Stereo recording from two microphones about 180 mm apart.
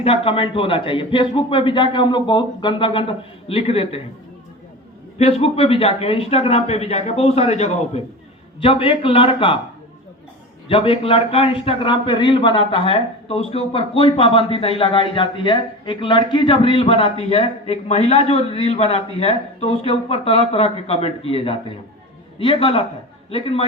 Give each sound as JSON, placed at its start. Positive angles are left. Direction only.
{"t": 0.0, "sound": "a man's voice", "side_deg": 30}
{"t": 5.1, "sound": "a man's voice", "side_deg": 35}
{"t": 10.7, "sound": "a man's voice", "side_deg": 30}